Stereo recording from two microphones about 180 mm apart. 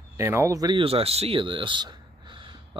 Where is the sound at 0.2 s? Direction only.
15° right (ahead or behind).